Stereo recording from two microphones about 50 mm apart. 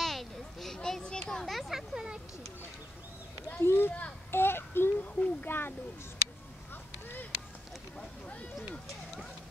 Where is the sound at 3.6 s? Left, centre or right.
Left.